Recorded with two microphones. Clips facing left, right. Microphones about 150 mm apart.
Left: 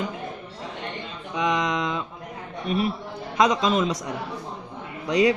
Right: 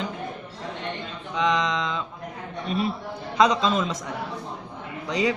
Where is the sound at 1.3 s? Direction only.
15° left (ahead or behind).